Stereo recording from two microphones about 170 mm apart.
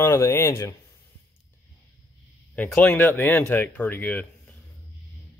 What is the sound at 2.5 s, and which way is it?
Speech, 10° left (ahead or behind).